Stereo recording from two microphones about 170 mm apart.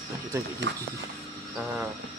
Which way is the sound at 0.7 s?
90° right.